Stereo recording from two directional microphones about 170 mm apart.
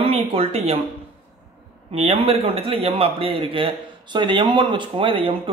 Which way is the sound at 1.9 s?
35° right (ahead or behind).